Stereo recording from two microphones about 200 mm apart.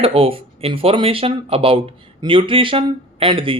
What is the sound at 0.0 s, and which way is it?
Speech, 30° right (ahead or behind).